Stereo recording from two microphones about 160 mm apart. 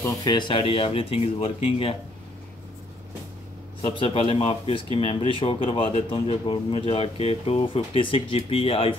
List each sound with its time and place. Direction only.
0.0 s speech: 25° left (ahead or behind)
3.8 s speech: 35° left (ahead or behind)